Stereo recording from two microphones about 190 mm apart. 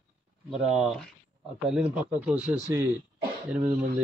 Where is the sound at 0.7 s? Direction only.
5° right (ahead or behind).